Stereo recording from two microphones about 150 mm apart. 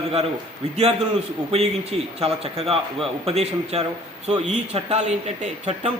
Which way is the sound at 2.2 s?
40° right (ahead or behind).